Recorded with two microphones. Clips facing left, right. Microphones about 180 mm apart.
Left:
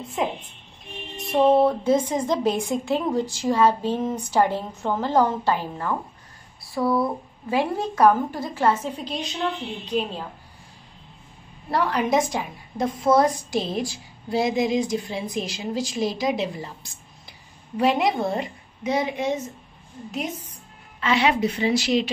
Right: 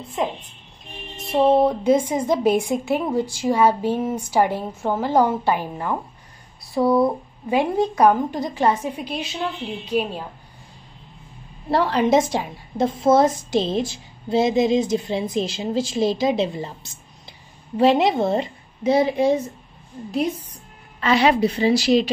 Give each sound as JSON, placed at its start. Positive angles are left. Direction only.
{"t": 0.2, "sound": "a woman's voice", "side_deg": 5}
{"t": 1.1, "sound": "a woman's voice", "side_deg": -10}
{"t": 11.7, "sound": "a woman's voice", "side_deg": -30}
{"t": 21.0, "sound": "a woman's voice", "side_deg": -35}